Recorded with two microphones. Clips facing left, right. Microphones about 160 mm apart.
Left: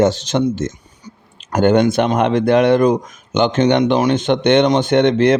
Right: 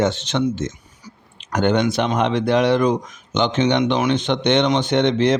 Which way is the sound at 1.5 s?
50° left (ahead or behind).